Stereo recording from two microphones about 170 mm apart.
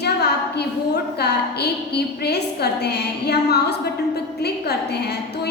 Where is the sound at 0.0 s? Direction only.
75° left (ahead or behind).